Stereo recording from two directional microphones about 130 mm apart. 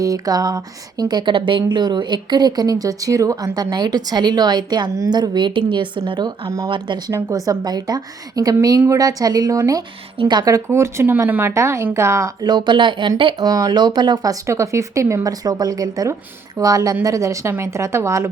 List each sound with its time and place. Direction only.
0.0 s speech: 30° right (ahead or behind)
7.1 s speech: 20° right (ahead or behind)